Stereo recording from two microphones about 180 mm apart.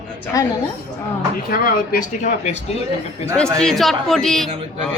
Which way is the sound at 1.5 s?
55° left (ahead or behind).